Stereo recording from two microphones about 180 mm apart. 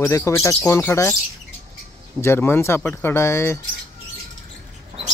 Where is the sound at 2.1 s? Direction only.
15° left (ahead or behind).